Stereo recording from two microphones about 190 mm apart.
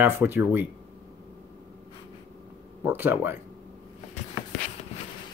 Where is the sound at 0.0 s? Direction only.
10° right (ahead or behind).